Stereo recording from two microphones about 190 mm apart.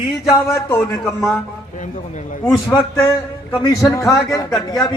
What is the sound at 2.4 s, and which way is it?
A man's voice, 15° left (ahead or behind).